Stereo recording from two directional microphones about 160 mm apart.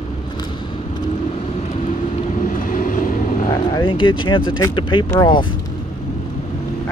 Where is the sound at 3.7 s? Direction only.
30° left (ahead or behind).